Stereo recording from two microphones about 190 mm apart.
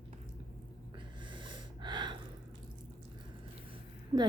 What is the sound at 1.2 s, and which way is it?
Snort, 25° right (ahead or behind).